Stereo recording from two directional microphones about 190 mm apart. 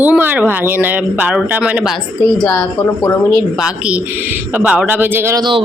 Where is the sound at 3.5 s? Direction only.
5° right (ahead or behind).